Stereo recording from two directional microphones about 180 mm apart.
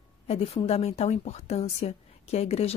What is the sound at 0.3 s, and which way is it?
Speech, 35° left (ahead or behind).